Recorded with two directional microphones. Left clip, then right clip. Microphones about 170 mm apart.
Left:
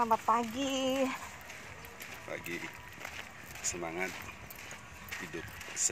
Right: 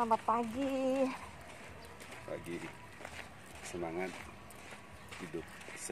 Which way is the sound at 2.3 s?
10° right (ahead or behind).